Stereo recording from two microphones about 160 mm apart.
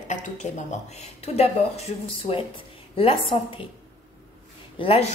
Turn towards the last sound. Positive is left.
turn(degrees=35)  # may be behind; listen again after turning